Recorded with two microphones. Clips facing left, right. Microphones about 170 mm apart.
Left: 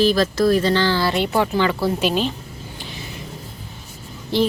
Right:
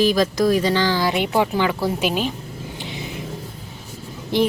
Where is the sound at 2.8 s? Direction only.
20° right (ahead or behind).